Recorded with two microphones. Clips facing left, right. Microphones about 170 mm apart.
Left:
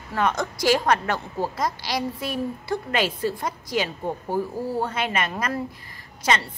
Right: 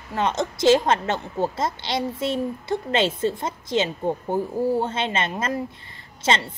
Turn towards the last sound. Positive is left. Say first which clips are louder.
# right 1 dB
turn(degrees=-25)  # may be behind; listen again after turning